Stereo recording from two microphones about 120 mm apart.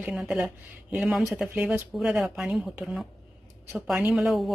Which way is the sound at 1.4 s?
15° right (ahead or behind).